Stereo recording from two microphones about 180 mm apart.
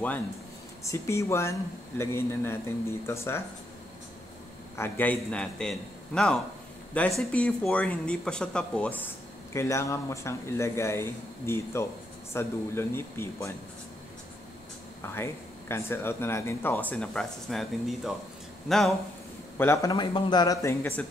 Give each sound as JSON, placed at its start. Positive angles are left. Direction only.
{"t": 0.8, "sound": "speech", "side_deg": 15}
{"t": 4.7, "sound": "a man's voice", "side_deg": 10}
{"t": 15.7, "sound": "a man's voice", "side_deg": 15}
{"t": 19.6, "sound": "a man's voice", "side_deg": 15}